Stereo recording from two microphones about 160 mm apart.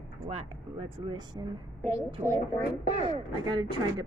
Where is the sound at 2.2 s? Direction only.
30° right (ahead or behind).